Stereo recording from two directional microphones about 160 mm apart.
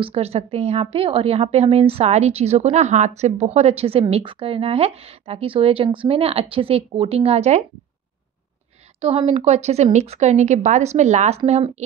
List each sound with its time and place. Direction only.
0.0 s a woman's voice: 40° right (ahead or behind)
9.0 s a woman's voice: 40° right (ahead or behind)